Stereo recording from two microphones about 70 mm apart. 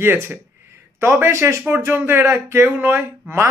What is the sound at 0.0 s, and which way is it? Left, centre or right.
Speech, right.